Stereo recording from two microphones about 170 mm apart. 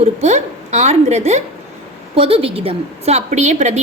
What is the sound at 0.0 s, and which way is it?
A woman's voice, 40° right (ahead or behind).